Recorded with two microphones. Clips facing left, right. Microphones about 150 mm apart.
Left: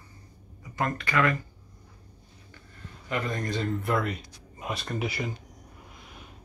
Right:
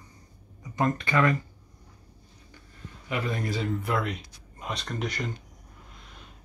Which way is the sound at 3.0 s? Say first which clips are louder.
Even; 10° right (ahead or behind).